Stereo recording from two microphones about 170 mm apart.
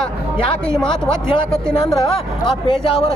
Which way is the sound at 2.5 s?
30° left (ahead or behind).